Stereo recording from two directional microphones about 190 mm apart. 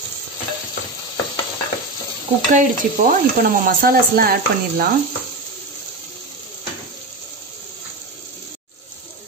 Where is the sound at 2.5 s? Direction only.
45° right (ahead or behind).